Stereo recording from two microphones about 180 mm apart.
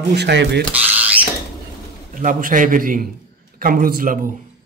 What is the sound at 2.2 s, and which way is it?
A man's voice, 50° right (ahead or behind).